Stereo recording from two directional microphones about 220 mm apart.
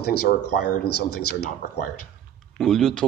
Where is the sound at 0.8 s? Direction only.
90° left.